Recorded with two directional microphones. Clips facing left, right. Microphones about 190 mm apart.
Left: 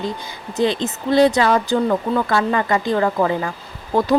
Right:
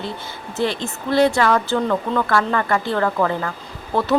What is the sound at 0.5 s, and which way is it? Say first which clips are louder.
Speech: left 4 dB; 20° left (ahead or behind).